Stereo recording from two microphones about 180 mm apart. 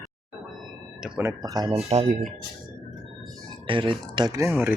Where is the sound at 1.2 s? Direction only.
15° right (ahead or behind).